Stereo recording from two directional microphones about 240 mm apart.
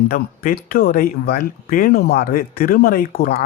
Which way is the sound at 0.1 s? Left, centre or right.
Left.